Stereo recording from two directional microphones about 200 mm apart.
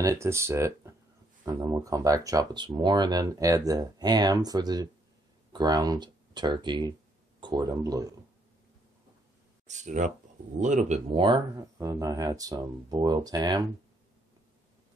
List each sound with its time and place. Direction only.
0.0 s speech: 15° right (ahead or behind)
9.7 s speech: 35° right (ahead or behind); by 13.7 s 20° right (ahead or behind)